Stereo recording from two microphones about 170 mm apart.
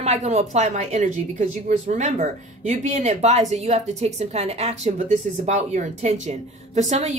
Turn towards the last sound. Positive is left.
turn(degrees=-45)  # may be behind; listen again after turning